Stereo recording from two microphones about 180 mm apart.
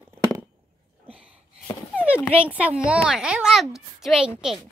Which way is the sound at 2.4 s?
5° right (ahead or behind).